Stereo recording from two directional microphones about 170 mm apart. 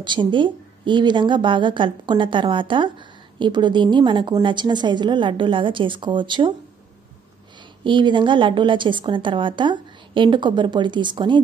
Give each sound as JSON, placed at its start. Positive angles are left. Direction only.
{"t": 0.0, "sound": "a woman's voice", "side_deg": -25}
{"t": 7.8, "sound": "a woman's voice", "side_deg": -30}